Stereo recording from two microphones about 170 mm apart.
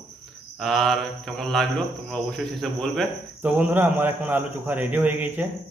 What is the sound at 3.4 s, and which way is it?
A man's voice, 10° right (ahead or behind).